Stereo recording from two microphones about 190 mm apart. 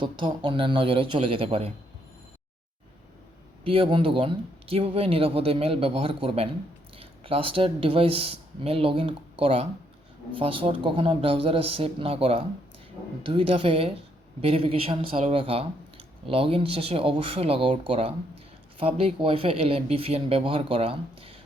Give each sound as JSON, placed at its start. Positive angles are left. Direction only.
{"t": 0.0, "sound": "speech", "side_deg": -25}
{"t": 3.6, "sound": "speech", "side_deg": -30}